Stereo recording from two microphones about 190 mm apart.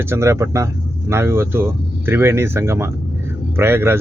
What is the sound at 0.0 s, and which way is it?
Speech, 15° right (ahead or behind).